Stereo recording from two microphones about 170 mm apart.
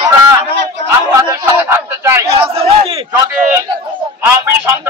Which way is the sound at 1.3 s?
15° right (ahead or behind).